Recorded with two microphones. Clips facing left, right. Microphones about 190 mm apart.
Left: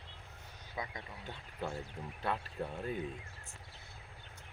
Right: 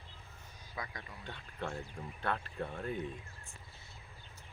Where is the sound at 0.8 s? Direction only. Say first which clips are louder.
Left 2 dB; 25° left (ahead or behind).